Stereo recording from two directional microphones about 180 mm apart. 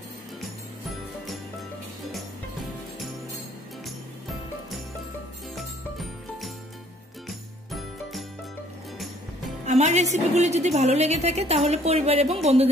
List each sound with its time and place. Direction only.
3.8 s music: centre (ahead or behind)
9.7 s a woman's voice: 40° right (ahead or behind)